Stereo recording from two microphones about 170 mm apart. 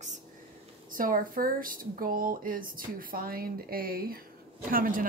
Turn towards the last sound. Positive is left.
turn(degrees=-55)  # may be behind; listen again after turning